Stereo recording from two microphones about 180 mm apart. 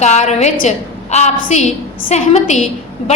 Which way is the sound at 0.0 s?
40° left (ahead or behind).